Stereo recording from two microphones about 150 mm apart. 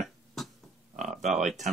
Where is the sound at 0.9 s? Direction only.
55° right (ahead or behind).